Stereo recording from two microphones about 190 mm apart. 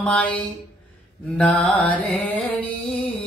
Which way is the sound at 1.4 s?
5° left (ahead or behind).